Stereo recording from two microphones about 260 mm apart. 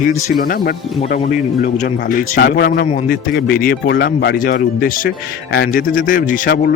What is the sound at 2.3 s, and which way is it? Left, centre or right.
Speech, left.